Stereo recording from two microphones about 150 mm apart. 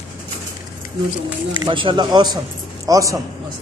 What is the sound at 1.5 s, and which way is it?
Speech, 30° right (ahead or behind).